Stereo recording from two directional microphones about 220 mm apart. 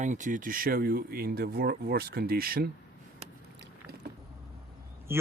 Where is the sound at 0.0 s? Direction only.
35° right (ahead or behind).